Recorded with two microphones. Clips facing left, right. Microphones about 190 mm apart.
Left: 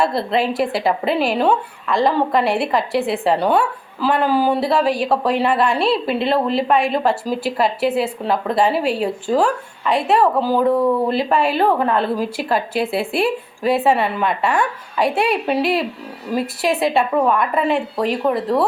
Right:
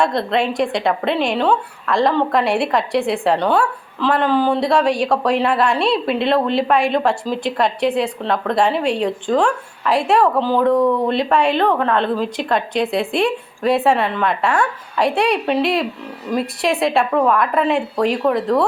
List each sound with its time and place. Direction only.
0.0 s speech: 5° left (ahead or behind)